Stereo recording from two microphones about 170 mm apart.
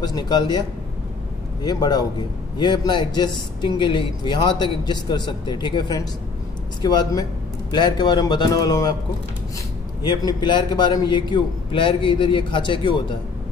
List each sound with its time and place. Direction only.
0.0 s a man's voice: 25° left (ahead or behind)
10.0 s a man's voice: 25° left (ahead or behind)